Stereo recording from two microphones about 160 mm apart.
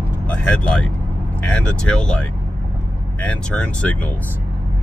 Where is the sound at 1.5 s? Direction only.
5° left (ahead or behind).